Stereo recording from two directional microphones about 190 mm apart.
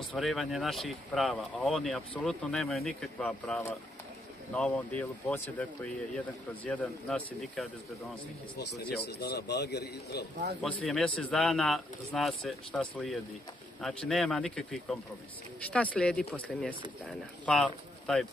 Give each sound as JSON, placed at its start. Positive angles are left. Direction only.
{"t": 0.1, "sound": "speech", "side_deg": 0}
{"t": 8.5, "sound": "a man's voice", "side_deg": 60}
{"t": 10.6, "sound": "speech", "side_deg": 0}